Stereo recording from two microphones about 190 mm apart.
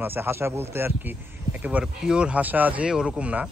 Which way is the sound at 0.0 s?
10° right (ahead or behind).